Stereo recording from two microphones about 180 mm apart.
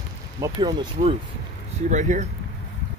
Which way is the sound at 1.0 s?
45° right (ahead or behind).